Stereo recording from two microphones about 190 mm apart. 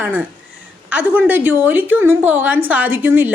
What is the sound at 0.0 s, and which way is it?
A woman's voice, 10° right (ahead or behind).